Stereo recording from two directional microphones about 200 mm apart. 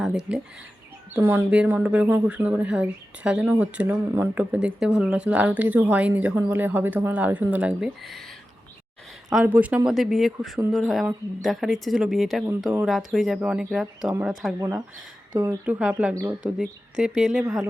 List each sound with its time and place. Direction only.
0.3 s speech: 5° right (ahead or behind)
9.3 s speech: 10° right (ahead or behind)
14.6 s speech: 15° right (ahead or behind)